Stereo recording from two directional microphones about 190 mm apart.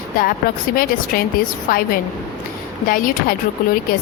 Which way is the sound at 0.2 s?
50° left (ahead or behind).